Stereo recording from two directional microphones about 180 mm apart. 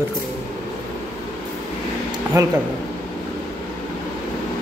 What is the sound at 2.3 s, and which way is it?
Speech, 20° right (ahead or behind).